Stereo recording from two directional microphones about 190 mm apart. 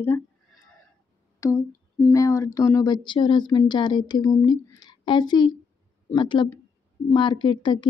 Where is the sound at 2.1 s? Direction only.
15° left (ahead or behind).